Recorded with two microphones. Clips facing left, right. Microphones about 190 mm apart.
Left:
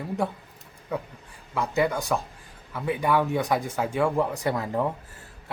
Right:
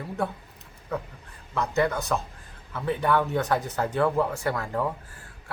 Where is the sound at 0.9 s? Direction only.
15° left (ahead or behind).